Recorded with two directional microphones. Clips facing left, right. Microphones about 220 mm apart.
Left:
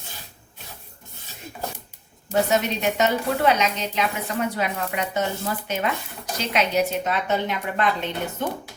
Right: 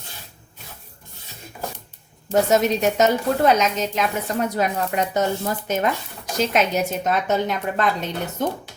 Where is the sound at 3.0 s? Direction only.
45° right (ahead or behind).